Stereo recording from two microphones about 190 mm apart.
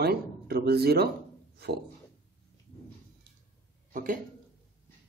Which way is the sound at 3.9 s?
45° right (ahead or behind).